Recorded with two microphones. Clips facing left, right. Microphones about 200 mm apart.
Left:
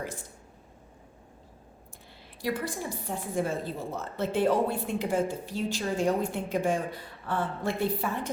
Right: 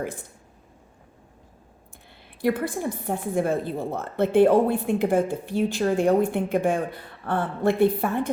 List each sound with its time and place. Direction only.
2.4 s a woman's voice: 55° right (ahead or behind)